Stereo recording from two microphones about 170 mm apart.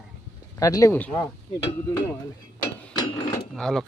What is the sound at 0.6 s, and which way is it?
Speech, 20° left (ahead or behind).